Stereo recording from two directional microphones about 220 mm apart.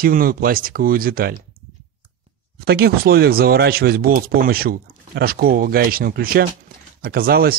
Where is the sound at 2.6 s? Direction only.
45° right (ahead or behind).